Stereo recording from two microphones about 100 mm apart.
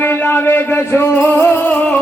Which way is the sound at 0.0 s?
25° left (ahead or behind).